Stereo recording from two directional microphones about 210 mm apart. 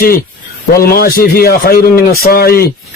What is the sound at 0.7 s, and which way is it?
Speech, 45° left (ahead or behind).